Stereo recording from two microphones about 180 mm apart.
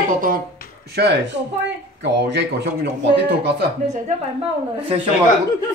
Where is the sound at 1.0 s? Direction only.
70° right (ahead or behind).